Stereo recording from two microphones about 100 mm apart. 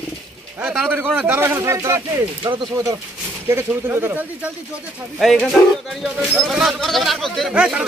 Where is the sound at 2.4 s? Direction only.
50° right (ahead or behind).